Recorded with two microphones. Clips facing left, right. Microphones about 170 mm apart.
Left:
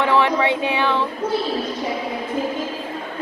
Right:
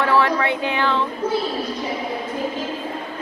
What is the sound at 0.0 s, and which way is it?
A woman's voice, 15° left (ahead or behind).